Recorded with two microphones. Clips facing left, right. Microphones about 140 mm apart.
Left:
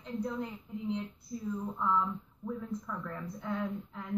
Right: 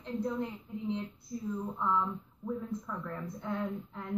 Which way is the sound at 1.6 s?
10° right (ahead or behind).